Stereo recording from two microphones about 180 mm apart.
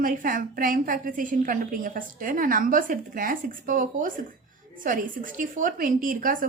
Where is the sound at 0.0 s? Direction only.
50° right (ahead or behind).